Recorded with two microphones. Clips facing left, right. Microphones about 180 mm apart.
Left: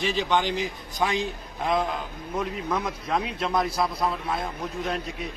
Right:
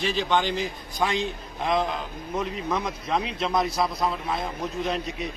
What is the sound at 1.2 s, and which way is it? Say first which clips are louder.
A man's voice: even; centre (ahead or behind).